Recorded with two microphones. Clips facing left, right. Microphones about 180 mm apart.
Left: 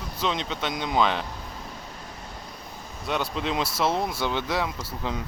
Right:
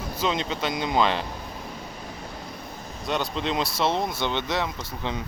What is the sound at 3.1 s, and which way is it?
Speech, 5° left (ahead or behind).